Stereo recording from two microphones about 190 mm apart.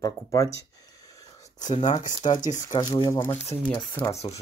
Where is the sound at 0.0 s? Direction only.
20° left (ahead or behind).